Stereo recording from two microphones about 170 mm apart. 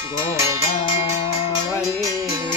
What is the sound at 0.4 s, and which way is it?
Music, 15° right (ahead or behind).